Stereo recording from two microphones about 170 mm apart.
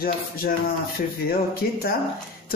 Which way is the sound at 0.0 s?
60° left (ahead or behind).